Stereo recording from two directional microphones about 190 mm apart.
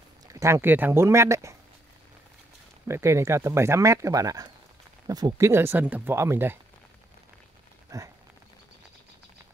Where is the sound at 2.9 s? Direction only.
15° right (ahead or behind).